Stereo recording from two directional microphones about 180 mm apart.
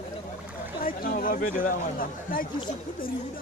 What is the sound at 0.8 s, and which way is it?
Speech, 50° left (ahead or behind).